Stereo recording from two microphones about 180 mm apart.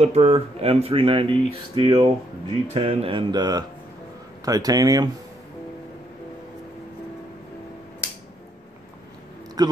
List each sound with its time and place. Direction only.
0.0 s speech: 35° right (ahead or behind)
9.6 s speech: 20° right (ahead or behind)